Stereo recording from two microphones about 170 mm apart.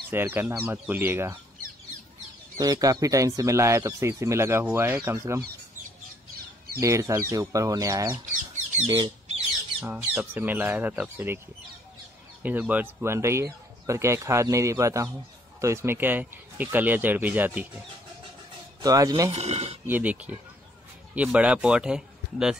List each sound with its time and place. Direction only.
0.1 s speech: 15° right (ahead or behind)
2.6 s speech: 20° right (ahead or behind)
6.8 s speech: 20° right (ahead or behind)
9.8 s speech: 10° right (ahead or behind)
12.4 s speech: 10° right (ahead or behind)
18.8 s speech: 20° right (ahead or behind)
19.3 s speech: 40° right (ahead or behind)
19.9 s speech: 10° right (ahead or behind)